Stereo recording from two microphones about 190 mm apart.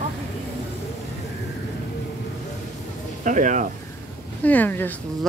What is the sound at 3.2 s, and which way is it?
Speech, 45° right (ahead or behind).